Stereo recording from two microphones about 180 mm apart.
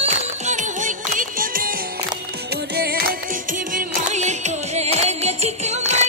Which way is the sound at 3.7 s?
45° right (ahead or behind).